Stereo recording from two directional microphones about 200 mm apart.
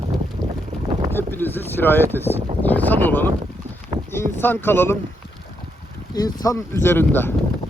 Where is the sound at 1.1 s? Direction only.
10° left (ahead or behind).